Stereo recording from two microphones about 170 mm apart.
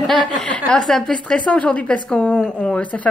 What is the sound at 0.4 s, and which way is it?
A woman's voice, 5° left (ahead or behind).